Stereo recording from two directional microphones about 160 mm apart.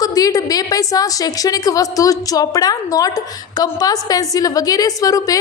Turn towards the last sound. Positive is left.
turn(degrees=20)  # may be behind; listen again after turning